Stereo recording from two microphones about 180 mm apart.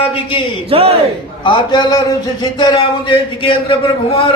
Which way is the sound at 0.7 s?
30° right (ahead or behind).